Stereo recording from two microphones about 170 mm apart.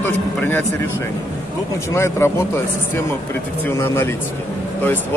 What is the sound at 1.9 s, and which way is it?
Speech, 15° left (ahead or behind).